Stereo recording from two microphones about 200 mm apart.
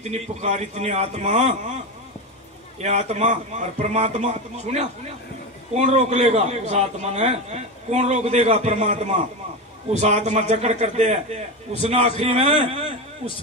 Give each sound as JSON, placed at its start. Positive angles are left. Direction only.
{"t": 0.0, "sound": "a man's voice", "side_deg": -35}
{"t": 2.8, "sound": "a man's voice", "side_deg": -35}